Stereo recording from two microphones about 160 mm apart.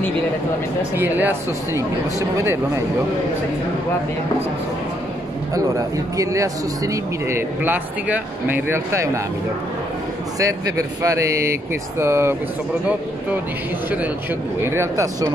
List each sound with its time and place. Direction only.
0.9 s a man's voice: 10° right (ahead or behind)
6.1 s a man's voice: 20° right (ahead or behind)
10.4 s a man's voice: 20° right (ahead or behind)
14.6 s a man's voice: 15° right (ahead or behind)